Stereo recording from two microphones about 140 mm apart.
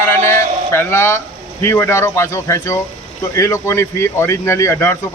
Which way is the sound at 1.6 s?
15° left (ahead or behind).